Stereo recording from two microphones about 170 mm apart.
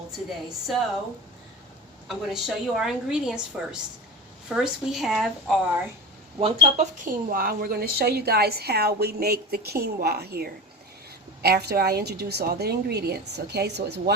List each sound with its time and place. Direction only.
2.0 s a woman's voice: centre (ahead or behind)
6.4 s a woman's voice: 40° right (ahead or behind); by 14.1 s 75° right (ahead or behind)